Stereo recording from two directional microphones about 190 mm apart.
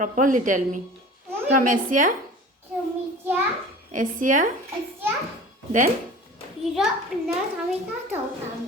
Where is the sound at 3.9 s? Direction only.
45° right (ahead or behind).